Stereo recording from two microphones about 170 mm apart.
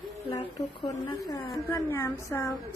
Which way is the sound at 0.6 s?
20° left (ahead or behind).